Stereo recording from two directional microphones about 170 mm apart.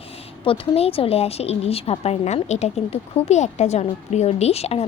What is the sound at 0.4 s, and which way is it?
A woman's voice, 30° left (ahead or behind).